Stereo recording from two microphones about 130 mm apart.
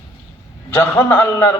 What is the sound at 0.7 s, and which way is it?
Mantra, 15° left (ahead or behind).